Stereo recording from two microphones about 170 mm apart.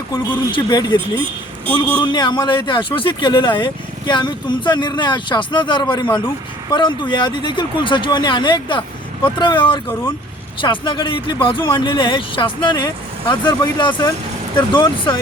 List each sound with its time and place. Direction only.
0.1 s speech: 25° left (ahead or behind)
1.7 s a man's voice: 10° left (ahead or behind)
2.1 s speech: 25° left (ahead or behind)